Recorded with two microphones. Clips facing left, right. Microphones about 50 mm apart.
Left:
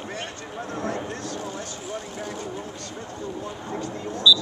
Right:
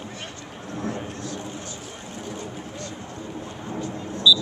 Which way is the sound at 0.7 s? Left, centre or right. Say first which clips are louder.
Left 1 dB; left.